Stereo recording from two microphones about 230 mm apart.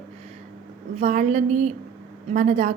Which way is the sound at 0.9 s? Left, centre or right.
Right.